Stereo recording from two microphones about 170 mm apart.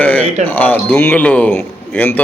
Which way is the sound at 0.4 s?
10° left (ahead or behind).